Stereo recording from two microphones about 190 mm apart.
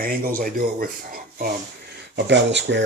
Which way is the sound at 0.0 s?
50° right (ahead or behind).